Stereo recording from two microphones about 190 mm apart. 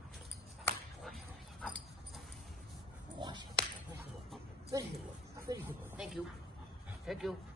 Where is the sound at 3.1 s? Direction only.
25° right (ahead or behind).